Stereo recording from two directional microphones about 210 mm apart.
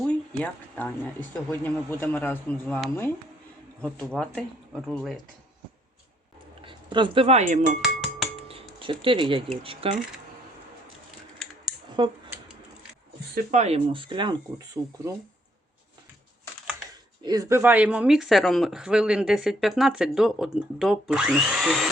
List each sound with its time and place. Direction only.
0.1 s speech: 5° left (ahead or behind)
6.7 s speech: 25° right (ahead or behind)
7.8 s dishes: centre (ahead or behind)
8.4 s a sound: 25° right (ahead or behind)
9.6 s speech: 25° right (ahead or behind)
12.0 s speech: 20° right (ahead or behind)
13.3 s speech: 35° right (ahead or behind)
17.2 s speech: 15° right (ahead or behind)